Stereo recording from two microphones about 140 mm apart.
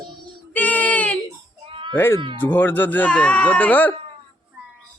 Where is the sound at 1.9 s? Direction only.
15° left (ahead or behind).